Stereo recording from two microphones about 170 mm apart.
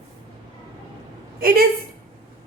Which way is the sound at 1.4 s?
60° right (ahead or behind).